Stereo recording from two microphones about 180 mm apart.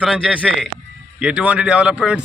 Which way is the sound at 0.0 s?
5° left (ahead or behind).